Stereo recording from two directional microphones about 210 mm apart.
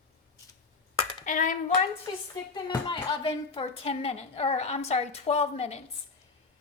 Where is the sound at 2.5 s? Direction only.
20° left (ahead or behind).